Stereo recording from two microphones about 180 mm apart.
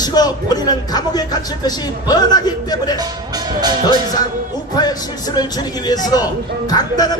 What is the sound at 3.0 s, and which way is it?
Speech, 20° right (ahead or behind).